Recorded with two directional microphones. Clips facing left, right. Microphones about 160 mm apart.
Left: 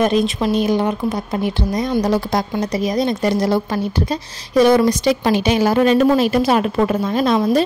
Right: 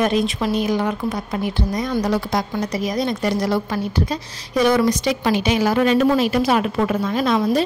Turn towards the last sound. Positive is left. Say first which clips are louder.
# left 2 dB
turn(degrees=35)  # may be behind; listen again after turning